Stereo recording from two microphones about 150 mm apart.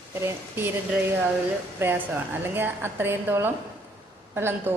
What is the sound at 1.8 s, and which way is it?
A woman's voice, 15° right (ahead or behind).